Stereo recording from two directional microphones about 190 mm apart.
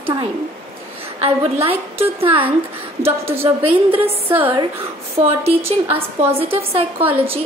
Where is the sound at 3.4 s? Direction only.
30° right (ahead or behind).